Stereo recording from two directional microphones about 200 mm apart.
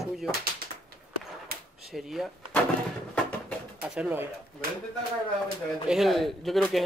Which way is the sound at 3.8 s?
5° right (ahead or behind).